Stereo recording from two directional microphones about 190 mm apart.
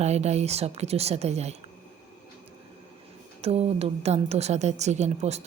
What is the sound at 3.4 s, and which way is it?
A woman's voice, 30° right (ahead or behind).